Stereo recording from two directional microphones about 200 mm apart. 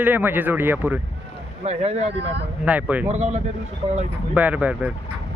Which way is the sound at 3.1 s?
35° right (ahead or behind).